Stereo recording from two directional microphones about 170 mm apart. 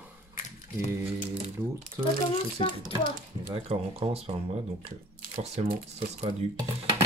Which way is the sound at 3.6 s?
35° right (ahead or behind).